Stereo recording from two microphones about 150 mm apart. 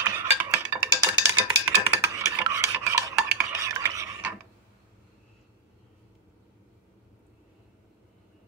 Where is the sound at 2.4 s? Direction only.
20° right (ahead or behind).